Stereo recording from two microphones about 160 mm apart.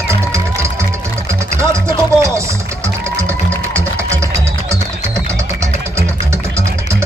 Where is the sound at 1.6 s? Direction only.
15° right (ahead or behind).